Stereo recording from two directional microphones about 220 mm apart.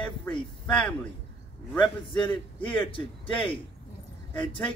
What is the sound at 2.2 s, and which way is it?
A man's voice, 20° left (ahead or behind).